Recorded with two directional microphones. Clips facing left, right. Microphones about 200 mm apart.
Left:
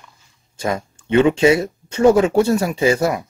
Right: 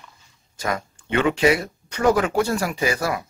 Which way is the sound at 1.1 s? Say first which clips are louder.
Left 6 dB; 25° left (ahead or behind).